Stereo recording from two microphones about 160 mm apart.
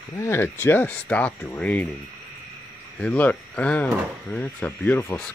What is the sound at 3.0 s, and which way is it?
Speech, 10° left (ahead or behind).